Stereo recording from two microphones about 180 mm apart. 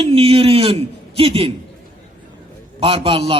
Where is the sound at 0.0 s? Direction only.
30° right (ahead or behind).